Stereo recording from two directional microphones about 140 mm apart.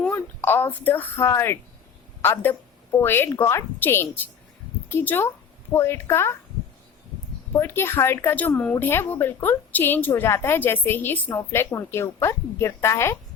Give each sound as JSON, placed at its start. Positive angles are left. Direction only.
{"t": 0.0, "sound": "a woman's voice", "side_deg": 15}
{"t": 7.5, "sound": "a woman's voice", "side_deg": 15}